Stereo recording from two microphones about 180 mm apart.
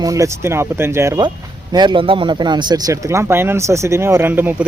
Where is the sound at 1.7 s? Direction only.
25° right (ahead or behind).